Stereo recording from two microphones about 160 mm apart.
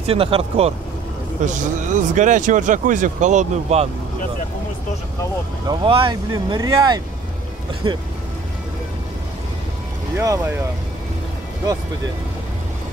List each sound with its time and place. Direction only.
0.0 s speech: 35° right (ahead or behind)
1.4 s speech: 50° right (ahead or behind)
5.7 s speech: 30° right (ahead or behind)
10.1 s speech: 20° right (ahead or behind)